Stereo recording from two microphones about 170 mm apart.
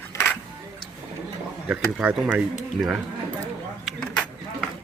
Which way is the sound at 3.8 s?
5° left (ahead or behind).